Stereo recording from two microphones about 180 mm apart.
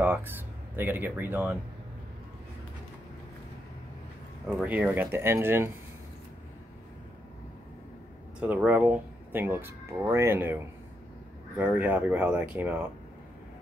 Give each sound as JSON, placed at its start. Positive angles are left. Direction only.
{"t": 0.0, "sound": "a sound", "side_deg": -10}
{"t": 0.7, "sound": "speech", "side_deg": -10}
{"t": 4.6, "sound": "speech", "side_deg": -10}
{"t": 8.4, "sound": "speech", "side_deg": -10}